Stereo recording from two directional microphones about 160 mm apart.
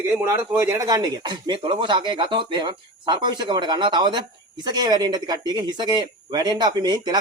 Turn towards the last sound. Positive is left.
turn(degrees=-25)  # may be behind; listen again after turning